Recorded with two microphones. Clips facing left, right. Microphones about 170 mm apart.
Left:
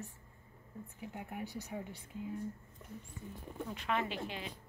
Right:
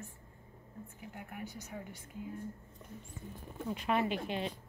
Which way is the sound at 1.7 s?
15° left (ahead or behind).